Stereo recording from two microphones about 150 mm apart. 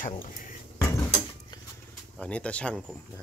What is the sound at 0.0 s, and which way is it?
Speech, 65° left (ahead or behind).